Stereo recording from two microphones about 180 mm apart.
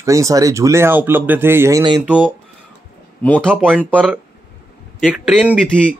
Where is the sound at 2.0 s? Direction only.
5° right (ahead or behind).